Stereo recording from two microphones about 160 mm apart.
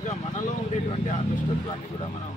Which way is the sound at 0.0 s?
50° left (ahead or behind).